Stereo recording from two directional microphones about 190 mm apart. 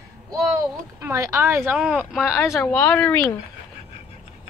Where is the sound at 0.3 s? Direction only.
15° right (ahead or behind); by 3.2 s 5° left (ahead or behind).